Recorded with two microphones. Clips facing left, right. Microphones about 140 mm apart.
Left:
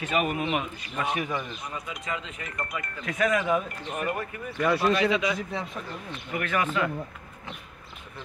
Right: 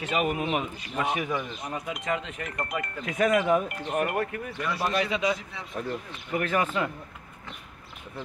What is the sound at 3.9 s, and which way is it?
Speech, 60° right (ahead or behind).